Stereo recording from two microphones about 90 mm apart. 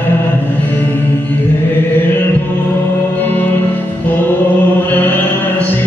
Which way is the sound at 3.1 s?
20° left (ahead or behind).